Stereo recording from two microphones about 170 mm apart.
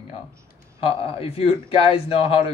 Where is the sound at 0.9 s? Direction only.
35° left (ahead or behind).